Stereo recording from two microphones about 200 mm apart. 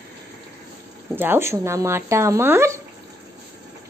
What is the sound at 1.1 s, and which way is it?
Speech, 10° right (ahead or behind).